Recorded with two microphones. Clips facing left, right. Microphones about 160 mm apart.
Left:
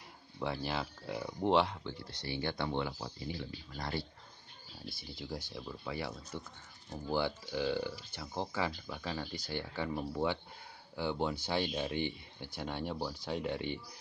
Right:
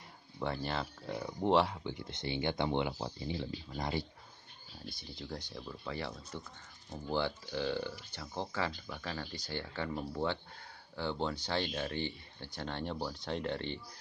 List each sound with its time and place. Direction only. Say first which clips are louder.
0.4 s speech: even; 5° left (ahead or behind)
1.9 s speech: right 2 dB; 20° right (ahead or behind)
4.8 s speech: left 1 dB; 5° left (ahead or behind)